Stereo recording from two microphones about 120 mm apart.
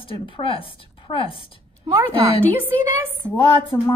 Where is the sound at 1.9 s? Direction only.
35° right (ahead or behind).